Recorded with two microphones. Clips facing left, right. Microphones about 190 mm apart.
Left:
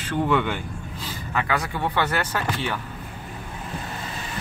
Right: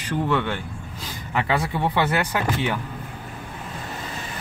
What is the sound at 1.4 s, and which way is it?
Speech, 25° right (ahead or behind).